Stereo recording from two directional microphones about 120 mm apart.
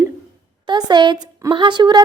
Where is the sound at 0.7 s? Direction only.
35° right (ahead or behind).